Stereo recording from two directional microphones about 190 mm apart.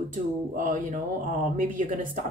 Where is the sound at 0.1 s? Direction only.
40° right (ahead or behind).